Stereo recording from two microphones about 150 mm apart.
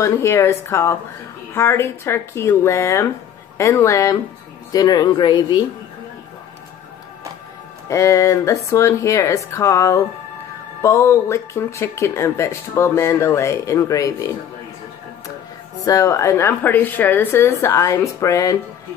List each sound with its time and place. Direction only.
0.0 s speech: 20° left (ahead or behind)
7.9 s speech: 20° left (ahead or behind)
15.8 s speech: 20° left (ahead or behind)